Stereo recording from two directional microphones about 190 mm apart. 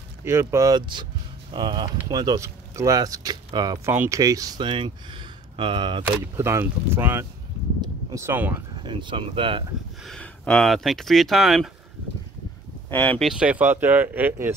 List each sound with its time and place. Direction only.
0.2 s speech: 15° right (ahead or behind)
6.0 s speech: 15° right (ahead or behind)
8.7 s speech: 25° right (ahead or behind)
10.0 s speech: 5° left (ahead or behind)
12.9 s speech: 10° left (ahead or behind)
13.3 s speech: 5° right (ahead or behind)